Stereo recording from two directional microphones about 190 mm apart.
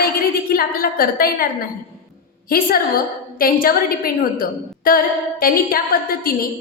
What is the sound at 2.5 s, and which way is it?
A woman's voice, 50° left (ahead or behind).